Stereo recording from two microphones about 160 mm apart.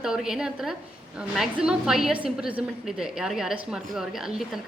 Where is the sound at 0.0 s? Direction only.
5° right (ahead or behind).